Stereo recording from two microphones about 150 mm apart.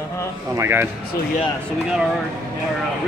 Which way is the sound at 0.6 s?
15° right (ahead or behind).